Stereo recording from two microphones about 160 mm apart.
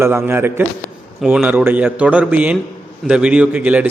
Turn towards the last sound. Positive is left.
turn(degrees=-10)  # may be behind; listen again after turning